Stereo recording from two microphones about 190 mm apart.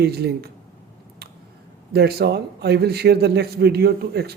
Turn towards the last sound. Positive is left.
turn(degrees=-55)  # may be behind; listen again after turning